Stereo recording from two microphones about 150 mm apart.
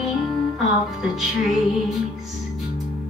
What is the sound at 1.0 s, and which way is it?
Music, 5° right (ahead or behind).